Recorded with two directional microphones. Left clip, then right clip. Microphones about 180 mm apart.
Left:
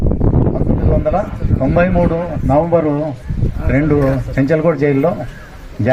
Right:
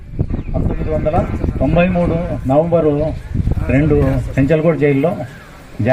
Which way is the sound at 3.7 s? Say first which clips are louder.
Left 1 dB; 25° right (ahead or behind).